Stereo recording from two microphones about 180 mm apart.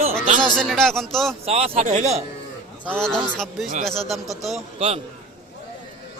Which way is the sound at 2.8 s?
5° left (ahead or behind).